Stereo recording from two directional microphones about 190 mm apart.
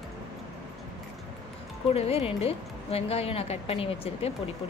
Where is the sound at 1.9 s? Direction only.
30° left (ahead or behind).